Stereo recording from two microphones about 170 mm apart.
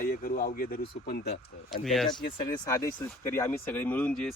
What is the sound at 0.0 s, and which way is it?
Speech, 55° left (ahead or behind).